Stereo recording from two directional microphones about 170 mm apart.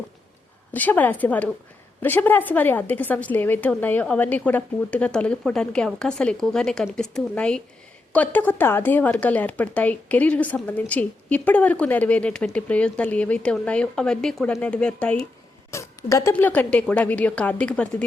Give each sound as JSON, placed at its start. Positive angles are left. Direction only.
{"t": 0.7, "sound": "a woman's voice", "side_deg": 10}
{"t": 15.7, "sound": "a sound", "side_deg": 15}
{"t": 16.3, "sound": "a woman's voice", "side_deg": 10}